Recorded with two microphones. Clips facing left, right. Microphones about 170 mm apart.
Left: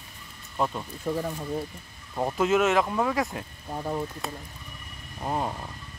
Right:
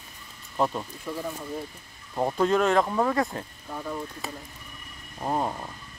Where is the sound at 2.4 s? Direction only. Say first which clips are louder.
Even; 5° left (ahead or behind).